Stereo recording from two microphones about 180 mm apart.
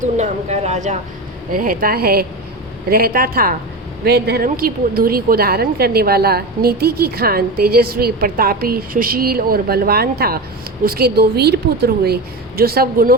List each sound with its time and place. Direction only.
0.0 s speech: 40° right (ahead or behind)
1.5 s a woman's voice: 50° right (ahead or behind)